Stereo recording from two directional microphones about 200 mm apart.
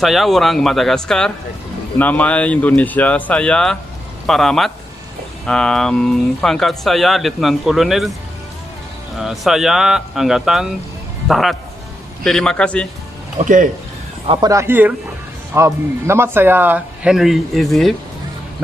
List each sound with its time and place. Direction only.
0.0 s speech: centre (ahead or behind)
9.2 s a man's voice: centre (ahead or behind)
13.4 s speech: 35° right (ahead or behind)
14.5 s speech: 10° right (ahead or behind)